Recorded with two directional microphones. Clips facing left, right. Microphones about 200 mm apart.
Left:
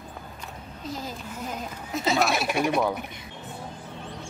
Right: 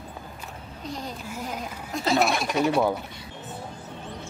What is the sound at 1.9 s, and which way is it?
Speech, 5° left (ahead or behind).